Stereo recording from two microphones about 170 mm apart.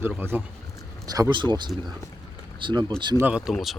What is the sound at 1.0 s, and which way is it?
Speech, 20° right (ahead or behind).